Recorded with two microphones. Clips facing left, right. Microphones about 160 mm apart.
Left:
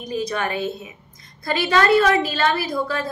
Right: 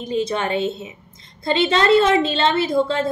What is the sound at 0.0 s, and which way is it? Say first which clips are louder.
A woman's voice: right 3 dB; 25° right (ahead or behind).